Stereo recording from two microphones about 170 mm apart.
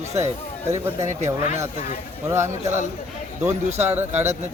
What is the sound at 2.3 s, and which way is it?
Speech, 15° right (ahead or behind).